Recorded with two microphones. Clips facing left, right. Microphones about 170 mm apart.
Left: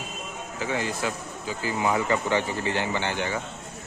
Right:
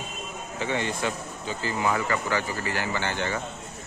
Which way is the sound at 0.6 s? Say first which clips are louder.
Even; 5° left (ahead or behind).